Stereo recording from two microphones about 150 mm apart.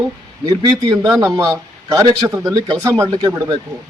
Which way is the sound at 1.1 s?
20° right (ahead or behind).